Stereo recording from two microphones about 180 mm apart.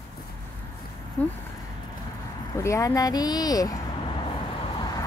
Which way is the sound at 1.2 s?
10° left (ahead or behind).